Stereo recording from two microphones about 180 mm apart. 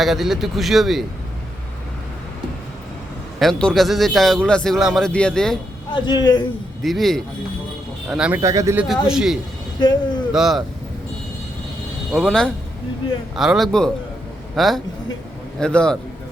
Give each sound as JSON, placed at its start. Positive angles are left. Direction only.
{"t": 0.0, "sound": "a man's voice", "side_deg": 0}
{"t": 3.3, "sound": "a man's voice", "side_deg": 5}
{"t": 5.9, "sound": "speech", "side_deg": 25}
{"t": 6.8, "sound": "a man's voice", "side_deg": 0}
{"t": 8.4, "sound": "speech", "side_deg": -15}
{"t": 8.8, "sound": "a man's voice", "side_deg": -5}
{"t": 12.1, "sound": "a man's voice", "side_deg": 0}